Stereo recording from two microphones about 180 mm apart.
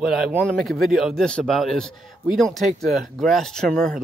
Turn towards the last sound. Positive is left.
turn(degrees=5)  # may be behind; listen again after turning